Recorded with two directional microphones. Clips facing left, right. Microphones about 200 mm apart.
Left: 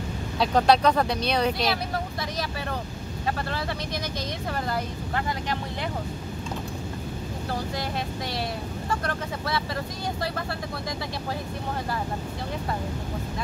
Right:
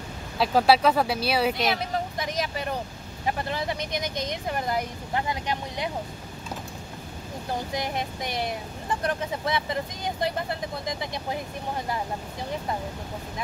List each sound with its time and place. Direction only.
0.4 s speech: 5° right (ahead or behind)
3.3 s speech: 15° right (ahead or behind)
7.7 s speech: 20° right (ahead or behind)